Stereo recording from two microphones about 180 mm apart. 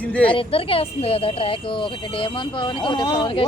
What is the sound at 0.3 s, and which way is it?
Speech, 30° left (ahead or behind).